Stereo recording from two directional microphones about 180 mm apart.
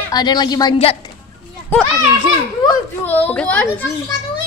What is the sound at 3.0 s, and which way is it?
Speech, 10° left (ahead or behind).